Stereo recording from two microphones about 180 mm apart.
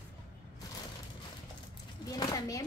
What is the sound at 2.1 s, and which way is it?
Speech, 20° left (ahead or behind).